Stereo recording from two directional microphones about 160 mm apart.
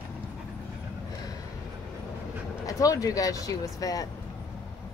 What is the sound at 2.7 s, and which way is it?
Speech, 20° left (ahead or behind).